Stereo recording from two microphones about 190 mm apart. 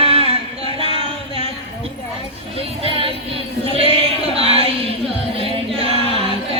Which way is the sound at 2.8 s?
30° right (ahead or behind).